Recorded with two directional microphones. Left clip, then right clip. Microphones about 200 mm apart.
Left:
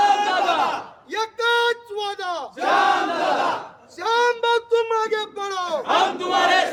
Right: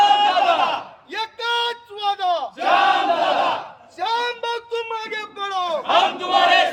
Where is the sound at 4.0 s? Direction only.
5° left (ahead or behind).